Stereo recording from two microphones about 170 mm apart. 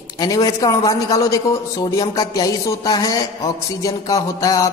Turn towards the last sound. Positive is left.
turn(degrees=20)  # may be behind; listen again after turning